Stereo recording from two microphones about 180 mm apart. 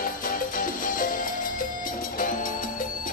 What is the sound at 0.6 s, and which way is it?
Music, 50° left (ahead or behind).